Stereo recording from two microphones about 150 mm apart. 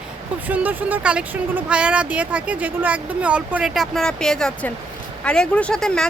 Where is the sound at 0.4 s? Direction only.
10° right (ahead or behind).